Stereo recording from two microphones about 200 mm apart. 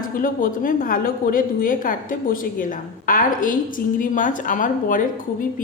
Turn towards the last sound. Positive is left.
turn(degrees=40)  # may be behind; listen again after turning